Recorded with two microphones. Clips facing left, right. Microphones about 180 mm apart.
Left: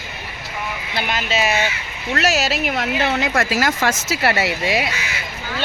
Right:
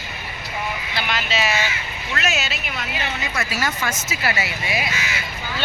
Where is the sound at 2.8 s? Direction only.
80° left.